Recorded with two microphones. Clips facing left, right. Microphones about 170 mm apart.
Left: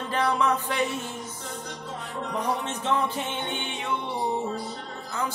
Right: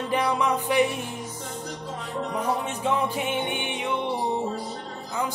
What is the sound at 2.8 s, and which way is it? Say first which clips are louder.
Music: right 1 dB; 10° right (ahead or behind).